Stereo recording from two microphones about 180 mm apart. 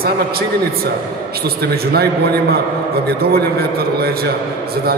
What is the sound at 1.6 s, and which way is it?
Speech, 60° right (ahead or behind).